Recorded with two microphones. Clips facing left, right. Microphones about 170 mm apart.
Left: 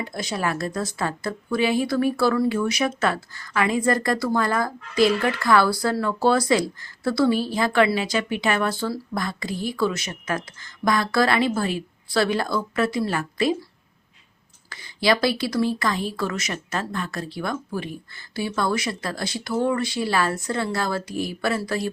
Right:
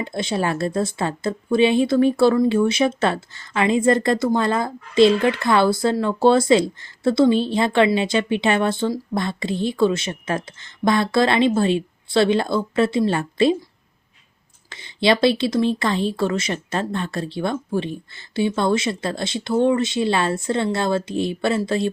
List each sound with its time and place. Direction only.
0.0 s a woman's voice: 25° right (ahead or behind)
14.7 s a woman's voice: 25° right (ahead or behind)